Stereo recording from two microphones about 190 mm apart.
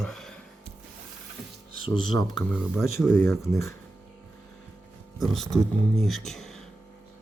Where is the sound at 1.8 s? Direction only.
25° left (ahead or behind).